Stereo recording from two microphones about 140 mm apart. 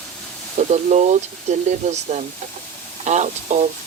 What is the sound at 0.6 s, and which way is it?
Speech, 55° right (ahead or behind).